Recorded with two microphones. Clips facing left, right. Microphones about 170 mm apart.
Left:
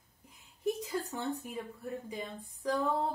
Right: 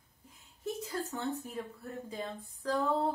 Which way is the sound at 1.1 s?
15° left (ahead or behind).